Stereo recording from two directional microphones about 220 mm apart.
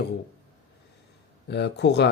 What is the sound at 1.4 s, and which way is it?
Speech, 50° left (ahead or behind).